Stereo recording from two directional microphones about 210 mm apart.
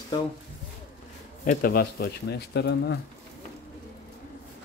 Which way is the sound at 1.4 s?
40° left (ahead or behind).